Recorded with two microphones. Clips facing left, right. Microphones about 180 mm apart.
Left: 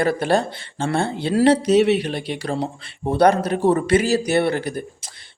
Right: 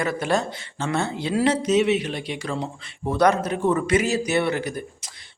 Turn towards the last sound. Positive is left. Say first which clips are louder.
# left 2 dB
turn(degrees=30)  # may be behind; listen again after turning